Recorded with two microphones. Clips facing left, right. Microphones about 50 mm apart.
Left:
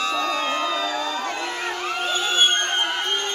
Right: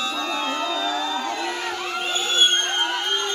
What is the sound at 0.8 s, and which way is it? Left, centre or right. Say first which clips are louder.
Music: even; left.